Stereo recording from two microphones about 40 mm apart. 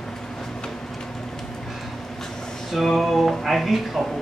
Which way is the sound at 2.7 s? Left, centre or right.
Centre.